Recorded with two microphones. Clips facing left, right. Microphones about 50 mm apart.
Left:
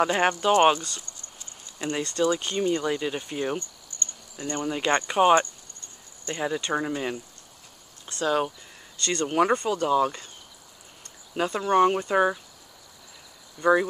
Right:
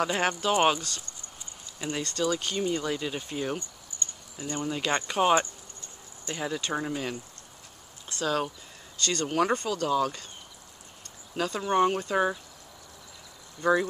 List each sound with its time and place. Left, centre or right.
0.0 s speech: centre
3.5 s keys jangling: centre
4.5 s speech: centre
9.0 s speech: centre
11.3 s speech: centre
13.6 s speech: centre